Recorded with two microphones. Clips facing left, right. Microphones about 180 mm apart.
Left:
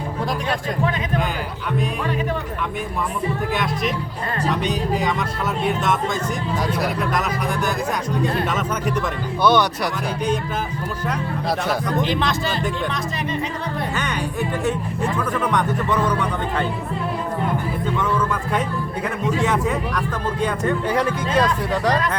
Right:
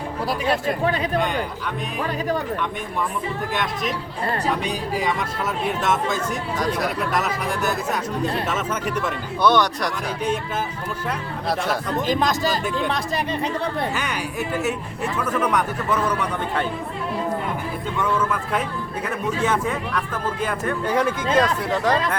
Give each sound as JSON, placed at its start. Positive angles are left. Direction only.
{"t": 3.5, "sound": "a man's voice", "side_deg": 0}
{"t": 12.0, "sound": "speech", "side_deg": -40}
{"t": 14.6, "sound": "a man's voice", "side_deg": -10}
{"t": 19.4, "sound": "speech", "side_deg": 0}